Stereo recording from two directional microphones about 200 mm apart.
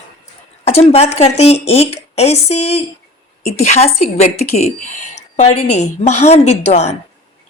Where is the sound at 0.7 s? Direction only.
30° left (ahead or behind).